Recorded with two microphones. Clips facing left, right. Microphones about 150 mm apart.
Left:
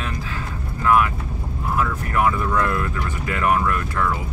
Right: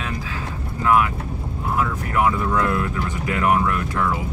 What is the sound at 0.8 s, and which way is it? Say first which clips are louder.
Speech: even; 20° right (ahead or behind).